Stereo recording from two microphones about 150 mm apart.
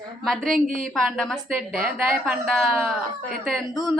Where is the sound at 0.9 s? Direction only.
Centre (ahead or behind).